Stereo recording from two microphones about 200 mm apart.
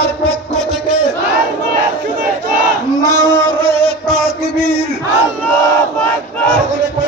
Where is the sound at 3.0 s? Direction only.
20° right (ahead or behind).